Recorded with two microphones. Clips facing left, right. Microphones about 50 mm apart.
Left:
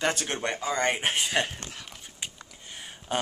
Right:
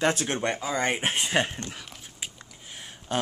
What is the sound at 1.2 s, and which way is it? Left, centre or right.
Speech, right.